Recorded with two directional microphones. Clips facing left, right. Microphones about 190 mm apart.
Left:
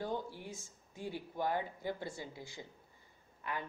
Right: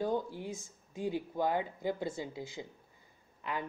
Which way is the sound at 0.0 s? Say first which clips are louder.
Right 6 dB; 15° right (ahead or behind).